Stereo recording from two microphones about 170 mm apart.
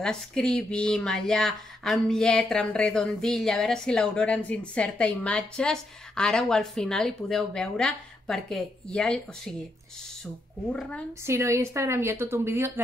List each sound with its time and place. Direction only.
0.0 s speech: 5° left (ahead or behind)
11.2 s a woman's voice: 15° right (ahead or behind)